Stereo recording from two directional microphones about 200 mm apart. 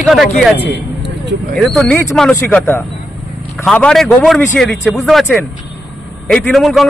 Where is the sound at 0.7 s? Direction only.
55° right (ahead or behind).